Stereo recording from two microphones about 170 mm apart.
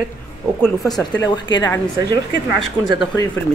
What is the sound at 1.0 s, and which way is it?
Speech, 25° left (ahead or behind).